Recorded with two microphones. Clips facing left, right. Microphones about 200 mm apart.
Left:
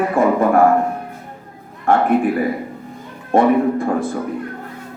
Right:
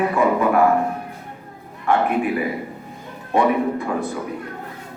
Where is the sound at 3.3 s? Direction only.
50° left (ahead or behind).